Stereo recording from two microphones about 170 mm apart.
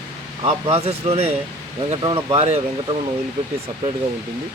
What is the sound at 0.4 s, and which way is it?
Speech, 35° right (ahead or behind).